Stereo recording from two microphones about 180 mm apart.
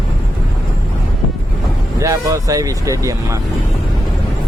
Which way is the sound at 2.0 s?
20° right (ahead or behind).